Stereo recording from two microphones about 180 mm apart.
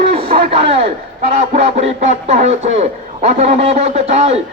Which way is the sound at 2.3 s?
40° right (ahead or behind).